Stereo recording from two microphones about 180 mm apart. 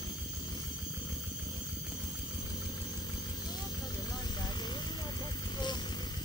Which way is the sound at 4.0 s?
20° left (ahead or behind).